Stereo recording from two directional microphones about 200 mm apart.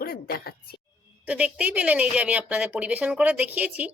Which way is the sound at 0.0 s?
50° left (ahead or behind).